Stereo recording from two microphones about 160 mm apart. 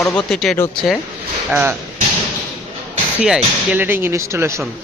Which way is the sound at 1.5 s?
10° right (ahead or behind).